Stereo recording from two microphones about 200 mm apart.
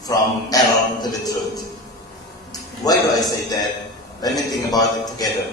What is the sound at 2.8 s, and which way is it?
Speech, 20° left (ahead or behind).